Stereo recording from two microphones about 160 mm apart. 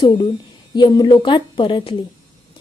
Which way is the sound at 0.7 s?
30° left (ahead or behind).